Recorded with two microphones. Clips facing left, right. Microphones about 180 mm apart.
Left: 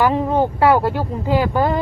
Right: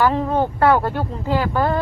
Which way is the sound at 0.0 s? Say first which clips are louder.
Left 2 dB; 15° left (ahead or behind).